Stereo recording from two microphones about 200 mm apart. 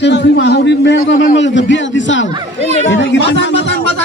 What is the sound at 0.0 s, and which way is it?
A man's voice, 60° left (ahead or behind).